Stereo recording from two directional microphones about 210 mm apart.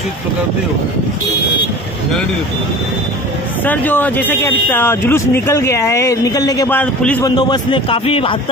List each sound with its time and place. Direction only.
3.6 s speech: 10° left (ahead or behind)
7.2 s a man's voice: 20° left (ahead or behind)